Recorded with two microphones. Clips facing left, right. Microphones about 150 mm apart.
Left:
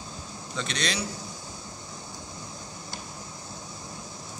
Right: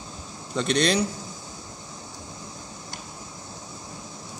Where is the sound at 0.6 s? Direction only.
55° right (ahead or behind).